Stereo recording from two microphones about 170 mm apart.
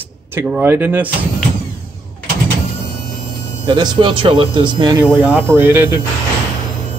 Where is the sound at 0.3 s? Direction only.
10° right (ahead or behind).